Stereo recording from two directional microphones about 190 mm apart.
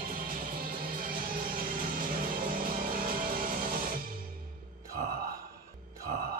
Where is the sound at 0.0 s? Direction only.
50° right (ahead or behind).